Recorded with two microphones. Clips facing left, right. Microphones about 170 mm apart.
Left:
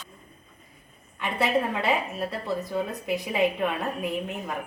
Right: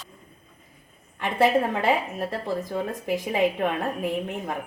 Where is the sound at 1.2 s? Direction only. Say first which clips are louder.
Right 4 dB; 45° right (ahead or behind).